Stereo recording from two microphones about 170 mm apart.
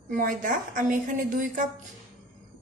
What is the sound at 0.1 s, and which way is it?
A woman's voice, 50° right (ahead or behind).